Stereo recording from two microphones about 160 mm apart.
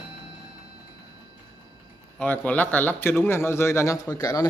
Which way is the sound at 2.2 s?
10° left (ahead or behind).